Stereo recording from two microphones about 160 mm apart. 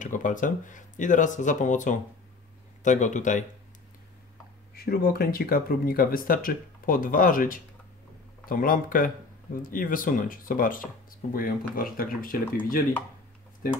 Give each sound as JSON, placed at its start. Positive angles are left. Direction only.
{"t": 0.0, "sound": "speech", "side_deg": 55}
{"t": 4.7, "sound": "speech", "side_deg": 70}